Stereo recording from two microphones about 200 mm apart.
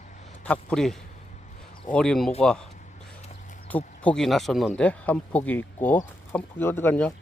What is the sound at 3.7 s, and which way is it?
Speech, 5° left (ahead or behind).